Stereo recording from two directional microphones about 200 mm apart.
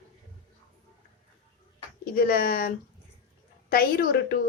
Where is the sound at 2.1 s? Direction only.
50° left (ahead or behind).